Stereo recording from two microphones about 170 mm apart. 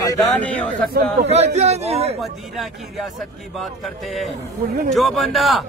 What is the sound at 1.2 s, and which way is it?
Speech, 40° right (ahead or behind).